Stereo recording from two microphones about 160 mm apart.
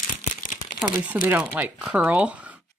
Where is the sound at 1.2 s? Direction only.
10° right (ahead or behind).